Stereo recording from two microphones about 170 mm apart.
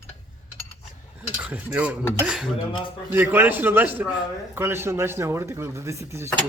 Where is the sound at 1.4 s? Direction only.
10° right (ahead or behind).